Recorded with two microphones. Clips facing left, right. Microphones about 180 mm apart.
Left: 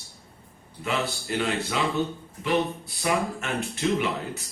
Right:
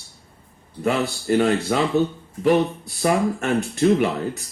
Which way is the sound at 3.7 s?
45° right (ahead or behind).